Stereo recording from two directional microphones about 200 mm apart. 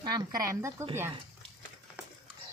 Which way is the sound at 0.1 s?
20° right (ahead or behind).